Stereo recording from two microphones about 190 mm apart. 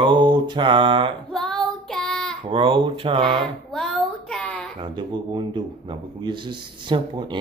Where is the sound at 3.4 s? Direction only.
5° left (ahead or behind).